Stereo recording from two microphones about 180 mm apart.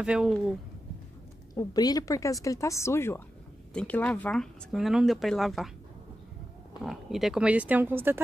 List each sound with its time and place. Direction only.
0.0 s speech: 5° right (ahead or behind)
1.5 s a woman's voice: 20° left (ahead or behind); by 5.7 s centre (ahead or behind)
6.8 s speech: centre (ahead or behind)